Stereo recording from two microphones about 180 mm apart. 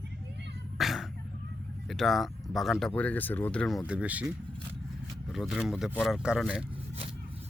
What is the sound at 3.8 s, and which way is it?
Speech, 5° right (ahead or behind).